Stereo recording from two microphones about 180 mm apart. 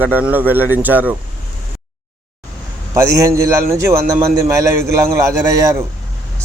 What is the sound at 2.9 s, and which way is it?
Speech, 15° right (ahead or behind).